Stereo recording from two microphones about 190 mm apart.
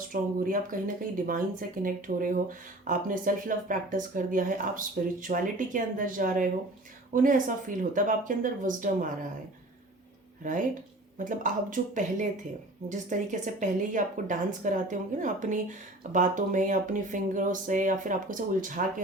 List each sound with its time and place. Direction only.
0.1 s speech: 45° right (ahead or behind)
10.4 s a woman's voice: 45° right (ahead or behind)